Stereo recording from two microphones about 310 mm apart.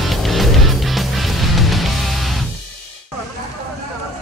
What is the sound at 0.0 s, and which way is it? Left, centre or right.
Music, centre.